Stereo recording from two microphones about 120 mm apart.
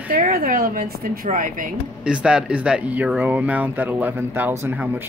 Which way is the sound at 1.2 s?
90° right.